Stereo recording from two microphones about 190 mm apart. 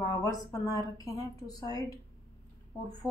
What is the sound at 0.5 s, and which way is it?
A woman's voice, 20° left (ahead or behind).